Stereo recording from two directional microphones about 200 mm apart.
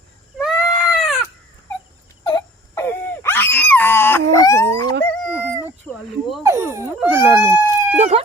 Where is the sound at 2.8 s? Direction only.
10° left (ahead or behind).